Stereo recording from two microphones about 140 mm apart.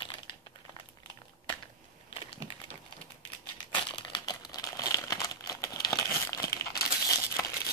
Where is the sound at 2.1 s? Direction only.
35° left (ahead or behind).